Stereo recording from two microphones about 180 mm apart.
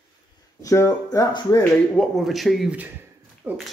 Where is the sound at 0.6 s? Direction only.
15° left (ahead or behind).